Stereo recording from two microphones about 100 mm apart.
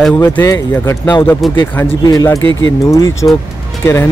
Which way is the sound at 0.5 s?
30° left (ahead or behind).